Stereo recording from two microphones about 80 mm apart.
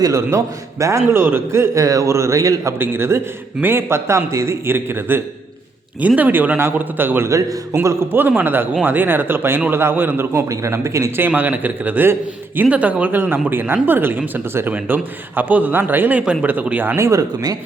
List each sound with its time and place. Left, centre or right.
0.3 s a man's voice: right
2.7 s a man's voice: right
7.3 s a man's voice: right
7.8 s a man's voice: right
11.2 s speech: right
17.0 s speech: right